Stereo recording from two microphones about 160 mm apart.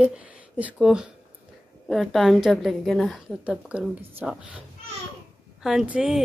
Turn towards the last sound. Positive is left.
turn(degrees=-5)  # may be behind; listen again after turning